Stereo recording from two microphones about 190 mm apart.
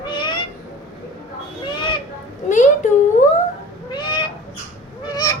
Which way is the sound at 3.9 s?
25° left (ahead or behind).